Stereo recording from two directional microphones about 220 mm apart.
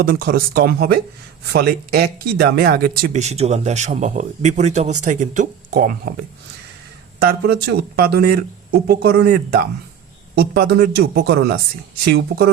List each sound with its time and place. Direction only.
0.0 s speech: 40° right (ahead or behind)
7.2 s speech: 45° right (ahead or behind)